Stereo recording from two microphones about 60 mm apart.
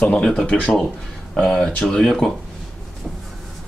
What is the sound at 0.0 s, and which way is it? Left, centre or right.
Speech, centre.